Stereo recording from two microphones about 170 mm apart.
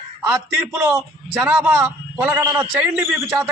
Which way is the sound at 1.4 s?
10° right (ahead or behind).